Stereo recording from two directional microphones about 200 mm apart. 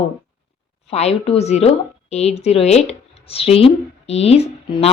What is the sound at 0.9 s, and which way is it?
A woman's voice, 30° left (ahead or behind).